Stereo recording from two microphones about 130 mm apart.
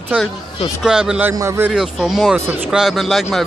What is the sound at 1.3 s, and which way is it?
Speech, 20° right (ahead or behind).